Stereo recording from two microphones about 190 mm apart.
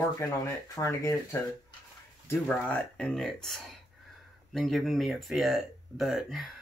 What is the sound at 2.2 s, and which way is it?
Speech, 5° left (ahead or behind).